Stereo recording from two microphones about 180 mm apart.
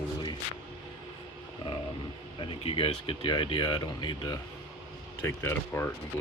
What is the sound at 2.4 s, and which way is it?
Speech, 30° left (ahead or behind).